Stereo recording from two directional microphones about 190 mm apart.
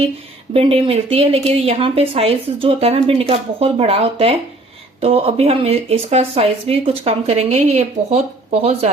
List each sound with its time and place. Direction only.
0.5 s speech: 30° right (ahead or behind)